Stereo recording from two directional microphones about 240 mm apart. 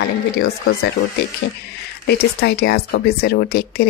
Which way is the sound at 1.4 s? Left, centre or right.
Left.